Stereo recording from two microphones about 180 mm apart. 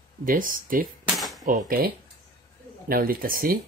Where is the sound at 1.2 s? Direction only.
Centre (ahead or behind).